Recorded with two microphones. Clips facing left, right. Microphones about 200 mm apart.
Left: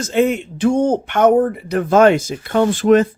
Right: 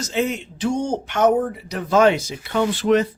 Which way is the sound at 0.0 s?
55° left (ahead or behind).